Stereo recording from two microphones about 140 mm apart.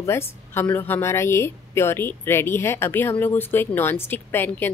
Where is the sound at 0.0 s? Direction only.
20° left (ahead or behind).